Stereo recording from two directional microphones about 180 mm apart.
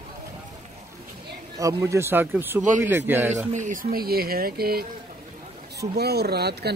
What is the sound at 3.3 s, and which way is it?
Speech, 40° right (ahead or behind).